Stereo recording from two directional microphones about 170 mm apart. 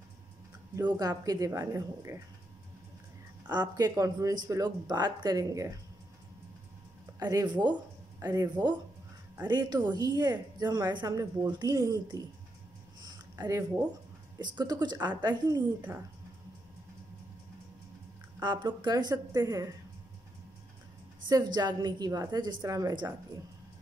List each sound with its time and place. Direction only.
0.7 s a woman's voice: 20° right (ahead or behind)
3.4 s a woman's voice: 25° right (ahead or behind)
7.2 s a woman's voice: 20° right (ahead or behind)
13.0 s a sound: 20° right (ahead or behind)
14.4 s a woman's voice: 25° right (ahead or behind)
18.4 s a woman's voice: 25° right (ahead or behind)
21.5 s a woman's voice: 25° right (ahead or behind)